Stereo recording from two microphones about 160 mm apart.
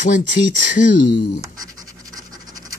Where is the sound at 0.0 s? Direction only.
50° left (ahead or behind).